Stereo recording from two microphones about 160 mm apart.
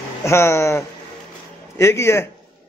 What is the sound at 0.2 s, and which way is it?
Speech, 15° left (ahead or behind).